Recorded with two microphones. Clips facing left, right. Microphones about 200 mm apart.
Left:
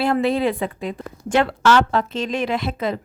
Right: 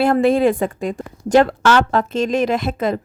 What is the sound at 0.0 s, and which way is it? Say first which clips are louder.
A woman's voice: right 5 dB; 50° right (ahead or behind).